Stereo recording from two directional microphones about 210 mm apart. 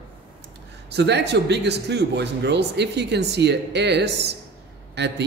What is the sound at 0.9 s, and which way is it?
A man's voice, 55° right (ahead or behind).